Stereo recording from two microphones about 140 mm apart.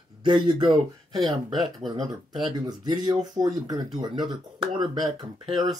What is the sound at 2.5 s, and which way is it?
Speech, 35° right (ahead or behind).